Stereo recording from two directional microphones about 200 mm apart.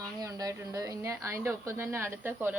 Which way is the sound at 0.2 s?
20° right (ahead or behind).